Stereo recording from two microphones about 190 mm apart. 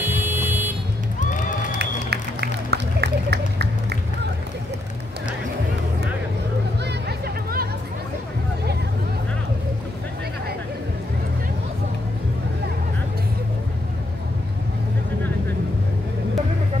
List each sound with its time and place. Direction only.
0.0 s vehicle: 10° right (ahead or behind)
1.2 s crowd: 40° left (ahead or behind)
1.8 s music: 60° right (ahead or behind)
6.8 s music: 60° right (ahead or behind)